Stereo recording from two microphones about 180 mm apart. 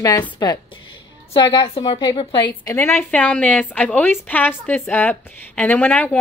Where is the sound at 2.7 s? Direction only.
15° left (ahead or behind).